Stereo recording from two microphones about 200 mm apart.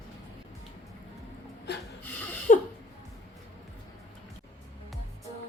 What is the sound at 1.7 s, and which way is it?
Rub, 55° left (ahead or behind).